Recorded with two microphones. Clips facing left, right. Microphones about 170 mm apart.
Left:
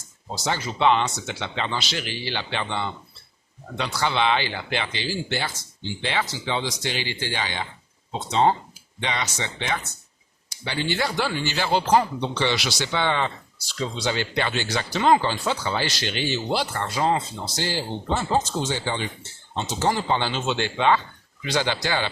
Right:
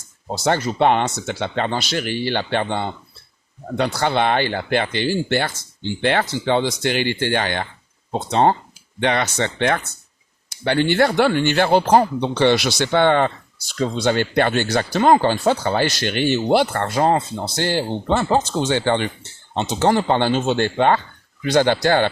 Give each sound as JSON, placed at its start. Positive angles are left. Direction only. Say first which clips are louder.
{"t": 0.3, "sound": "speech", "louder": "right 8 dB", "side_deg": -55}